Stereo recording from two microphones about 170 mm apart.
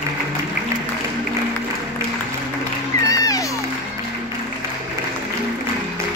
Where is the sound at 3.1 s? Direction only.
20° left (ahead or behind).